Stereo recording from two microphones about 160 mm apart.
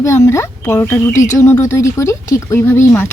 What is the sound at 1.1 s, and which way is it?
Speech, 50° left (ahead or behind).